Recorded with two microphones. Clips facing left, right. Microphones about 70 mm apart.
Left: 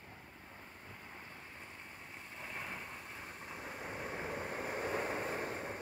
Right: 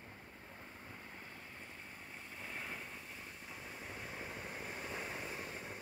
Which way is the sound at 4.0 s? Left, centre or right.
Left.